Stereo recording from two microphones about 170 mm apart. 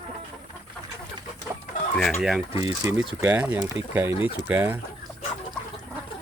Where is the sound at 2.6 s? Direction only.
20° right (ahead or behind).